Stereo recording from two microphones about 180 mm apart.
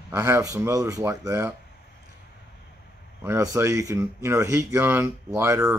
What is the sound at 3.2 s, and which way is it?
Speech, 20° right (ahead or behind).